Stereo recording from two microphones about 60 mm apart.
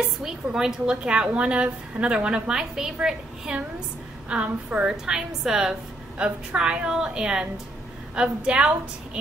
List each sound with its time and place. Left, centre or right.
0.2 s a woman's voice: centre